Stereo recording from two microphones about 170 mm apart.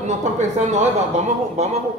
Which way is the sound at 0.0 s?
40° right (ahead or behind).